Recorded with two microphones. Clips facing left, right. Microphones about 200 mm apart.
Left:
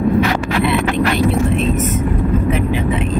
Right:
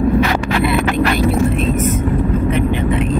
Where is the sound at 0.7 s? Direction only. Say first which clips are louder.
Even; centre (ahead or behind).